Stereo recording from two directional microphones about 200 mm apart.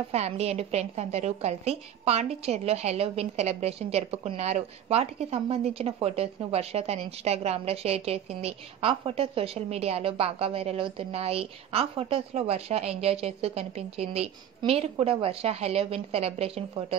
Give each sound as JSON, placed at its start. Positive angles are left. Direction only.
{"t": 0.1, "sound": "a woman's voice", "side_deg": -30}